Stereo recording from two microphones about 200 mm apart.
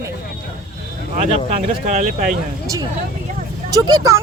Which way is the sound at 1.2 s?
40° right (ahead or behind).